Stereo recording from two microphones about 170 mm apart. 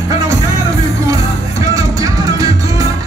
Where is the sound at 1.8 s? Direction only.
20° right (ahead or behind).